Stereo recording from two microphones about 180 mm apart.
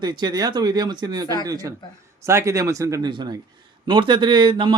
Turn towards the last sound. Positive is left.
turn(degrees=-25)  # may be behind; listen again after turning